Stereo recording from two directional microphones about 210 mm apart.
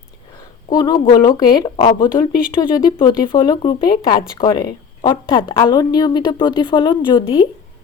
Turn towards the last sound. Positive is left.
turn(degrees=25)  # may be behind; listen again after turning